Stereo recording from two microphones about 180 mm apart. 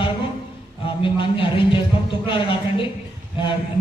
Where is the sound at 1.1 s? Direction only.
30° left (ahead or behind).